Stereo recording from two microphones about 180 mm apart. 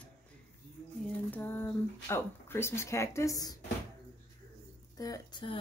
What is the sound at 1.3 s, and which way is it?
Speech, 10° left (ahead or behind).